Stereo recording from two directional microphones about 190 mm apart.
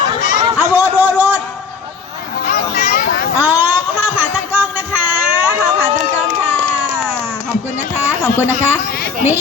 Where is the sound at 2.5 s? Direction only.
45° left (ahead or behind).